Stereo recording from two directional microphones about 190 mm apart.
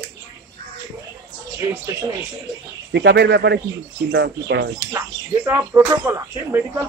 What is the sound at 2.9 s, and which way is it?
Speech, 65° right (ahead or behind).